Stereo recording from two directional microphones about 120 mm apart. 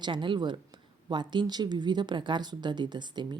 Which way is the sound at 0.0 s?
40° right (ahead or behind).